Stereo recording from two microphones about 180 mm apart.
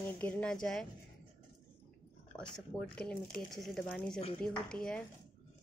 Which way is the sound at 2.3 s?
5° left (ahead or behind).